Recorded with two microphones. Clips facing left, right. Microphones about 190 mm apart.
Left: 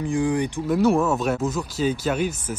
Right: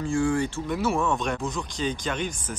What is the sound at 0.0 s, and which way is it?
Speech, 20° left (ahead or behind).